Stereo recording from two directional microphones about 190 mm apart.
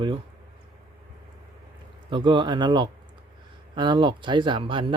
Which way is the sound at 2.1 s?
25° right (ahead or behind).